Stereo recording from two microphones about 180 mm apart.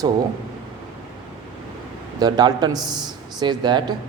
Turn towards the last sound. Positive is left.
turn(degrees=-25)  # may be behind; listen again after turning